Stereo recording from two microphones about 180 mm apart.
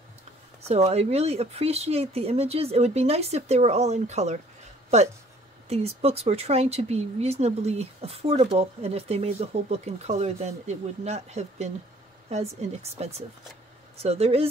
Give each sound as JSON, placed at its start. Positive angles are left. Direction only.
{"t": 0.6, "sound": "speech", "side_deg": -35}